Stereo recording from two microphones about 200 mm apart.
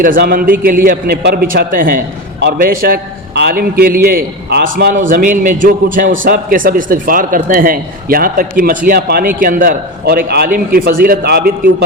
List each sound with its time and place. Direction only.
0.0 s a man's voice: 45° right (ahead or behind)